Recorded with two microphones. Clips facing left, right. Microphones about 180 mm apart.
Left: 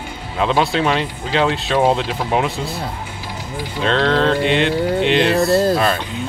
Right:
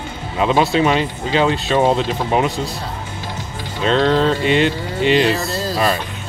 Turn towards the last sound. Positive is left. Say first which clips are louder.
# left 8 dB
turn(degrees=55)  # may be behind; listen again after turning